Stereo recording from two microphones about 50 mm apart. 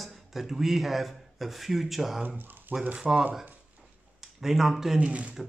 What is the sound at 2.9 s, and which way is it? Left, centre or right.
Speech, centre.